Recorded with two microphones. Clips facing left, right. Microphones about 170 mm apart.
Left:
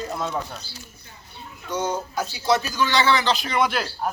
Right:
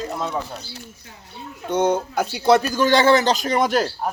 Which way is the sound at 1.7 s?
60° right (ahead or behind).